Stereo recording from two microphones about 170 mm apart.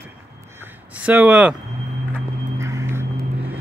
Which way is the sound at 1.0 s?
10° right (ahead or behind).